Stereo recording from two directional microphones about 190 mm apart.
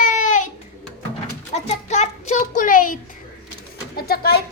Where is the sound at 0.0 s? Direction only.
40° left (ahead or behind).